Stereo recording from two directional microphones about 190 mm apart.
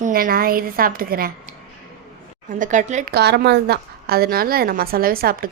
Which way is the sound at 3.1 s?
60° right (ahead or behind).